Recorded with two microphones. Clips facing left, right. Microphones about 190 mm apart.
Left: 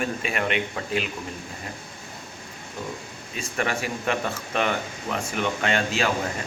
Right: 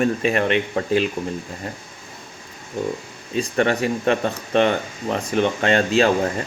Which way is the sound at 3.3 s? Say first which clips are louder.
Right 8 dB; 35° right (ahead or behind).